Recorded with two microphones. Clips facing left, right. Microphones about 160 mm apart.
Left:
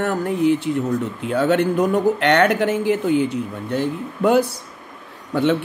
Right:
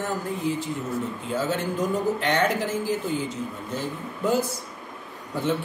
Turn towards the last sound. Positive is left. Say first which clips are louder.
# left 9 dB
turn(degrees=70)  # may be behind; listen again after turning